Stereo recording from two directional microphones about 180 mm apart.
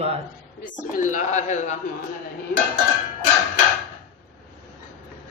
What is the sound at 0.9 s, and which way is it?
Speech, 45° left (ahead or behind).